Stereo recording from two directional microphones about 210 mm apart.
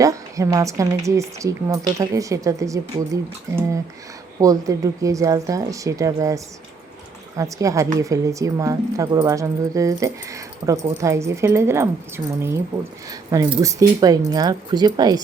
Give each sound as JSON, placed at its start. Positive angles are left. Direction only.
{"t": 0.0, "sound": "speech", "side_deg": -15}